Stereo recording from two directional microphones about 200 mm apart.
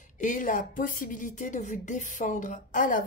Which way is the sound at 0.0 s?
40° left (ahead or behind).